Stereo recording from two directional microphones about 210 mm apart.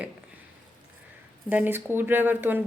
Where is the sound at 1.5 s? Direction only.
10° right (ahead or behind).